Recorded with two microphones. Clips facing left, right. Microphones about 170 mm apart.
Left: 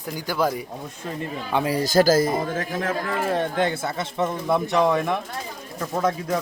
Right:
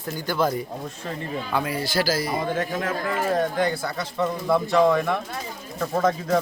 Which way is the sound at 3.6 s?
25° left (ahead or behind).